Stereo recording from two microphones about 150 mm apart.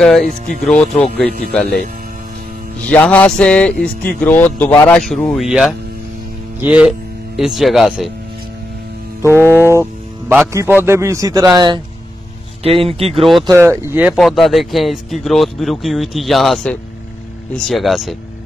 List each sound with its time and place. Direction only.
0.7 s speech: 5° left (ahead or behind)
2.9 s speech: 10° left (ahead or behind)
9.3 s a man's voice: 15° right (ahead or behind)
12.6 s speech: 40° right (ahead or behind)
13.1 s speech: centre (ahead or behind)
13.5 s speech: 15° right (ahead or behind)
14.1 s speech: centre (ahead or behind)